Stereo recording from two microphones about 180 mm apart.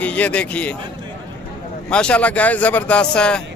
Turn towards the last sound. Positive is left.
turn(degrees=5)  # may be behind; listen again after turning